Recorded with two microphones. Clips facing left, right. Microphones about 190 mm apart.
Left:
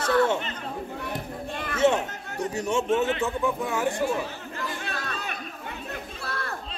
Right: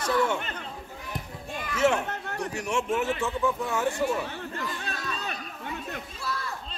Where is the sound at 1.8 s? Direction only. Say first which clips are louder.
Left 2 dB; 20° left (ahead or behind).